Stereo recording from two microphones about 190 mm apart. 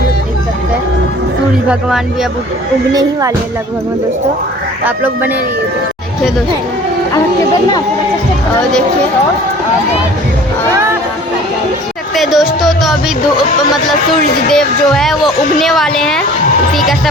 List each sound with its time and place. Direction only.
2.9 s speech: 20° right (ahead or behind)
4.9 s speech: 10° right (ahead or behind)
12.1 s a woman's voice: centre (ahead or behind)
14.5 s a woman's voice: 5° left (ahead or behind)